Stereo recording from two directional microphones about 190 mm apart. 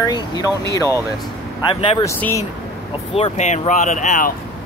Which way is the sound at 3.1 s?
35° left (ahead or behind).